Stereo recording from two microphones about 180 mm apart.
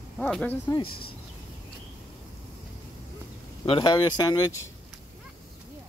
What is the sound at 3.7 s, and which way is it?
Speech, 25° left (ahead or behind).